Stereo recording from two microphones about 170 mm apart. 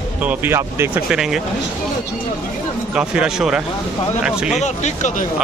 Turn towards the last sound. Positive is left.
turn(degrees=40)  # may be behind; listen again after turning